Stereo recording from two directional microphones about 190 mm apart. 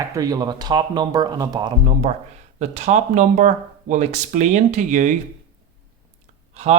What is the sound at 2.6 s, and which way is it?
Speech, 35° right (ahead or behind).